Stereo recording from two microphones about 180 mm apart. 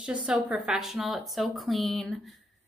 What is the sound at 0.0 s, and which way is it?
A woman's voice, 5° right (ahead or behind).